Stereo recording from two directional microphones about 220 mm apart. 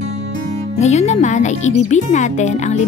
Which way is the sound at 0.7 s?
30° left (ahead or behind).